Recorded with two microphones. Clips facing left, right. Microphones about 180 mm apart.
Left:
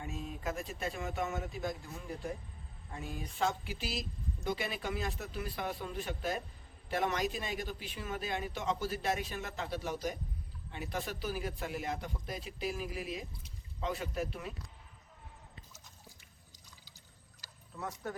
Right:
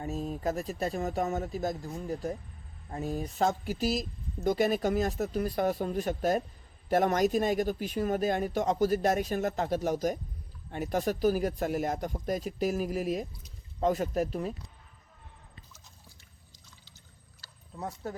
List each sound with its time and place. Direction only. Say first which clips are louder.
0.0 s a man's voice: right 8 dB; 40° right (ahead or behind)
17.7 s speech: right 3 dB; 35° right (ahead or behind)